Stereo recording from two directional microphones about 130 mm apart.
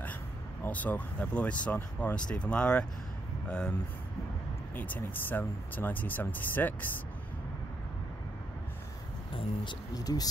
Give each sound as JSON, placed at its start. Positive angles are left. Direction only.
{"t": 0.7, "sound": "speech", "side_deg": 10}
{"t": 4.7, "sound": "speech", "side_deg": 10}
{"t": 9.3, "sound": "speech", "side_deg": 40}
{"t": 9.9, "sound": "speech", "side_deg": 30}